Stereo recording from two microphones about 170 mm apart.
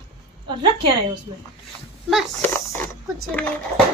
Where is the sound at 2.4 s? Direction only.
15° left (ahead or behind).